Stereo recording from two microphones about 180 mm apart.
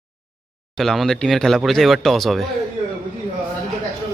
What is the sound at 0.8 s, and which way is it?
A man's voice, centre (ahead or behind).